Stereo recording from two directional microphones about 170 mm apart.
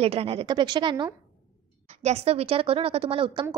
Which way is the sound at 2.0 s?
40° right (ahead or behind).